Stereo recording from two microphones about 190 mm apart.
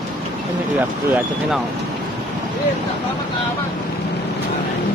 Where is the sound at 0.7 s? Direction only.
10° right (ahead or behind).